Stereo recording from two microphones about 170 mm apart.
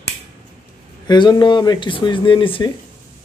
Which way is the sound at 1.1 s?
25° left (ahead or behind).